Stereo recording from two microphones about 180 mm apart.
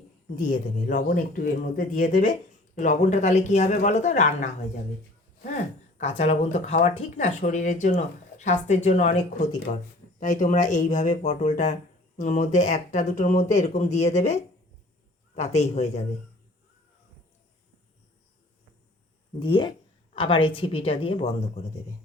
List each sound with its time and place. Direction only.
0.4 s speech: 45° left (ahead or behind)
6.0 s speech: 35° left (ahead or behind)
19.4 s speech: 25° left (ahead or behind)